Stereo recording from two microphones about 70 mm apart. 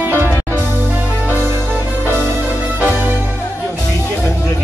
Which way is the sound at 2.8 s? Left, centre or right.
Right.